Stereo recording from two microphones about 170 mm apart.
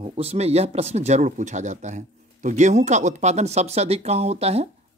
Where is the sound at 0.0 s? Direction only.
35° right (ahead or behind).